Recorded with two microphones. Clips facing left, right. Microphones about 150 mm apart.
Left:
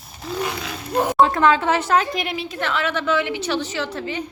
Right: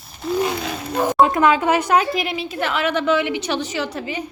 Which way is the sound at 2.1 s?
Centre (ahead or behind).